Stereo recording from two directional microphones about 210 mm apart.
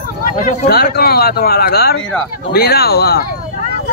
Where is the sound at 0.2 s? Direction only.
45° left (ahead or behind).